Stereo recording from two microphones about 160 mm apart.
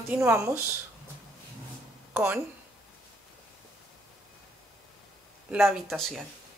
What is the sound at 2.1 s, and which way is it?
Speech, 10° right (ahead or behind).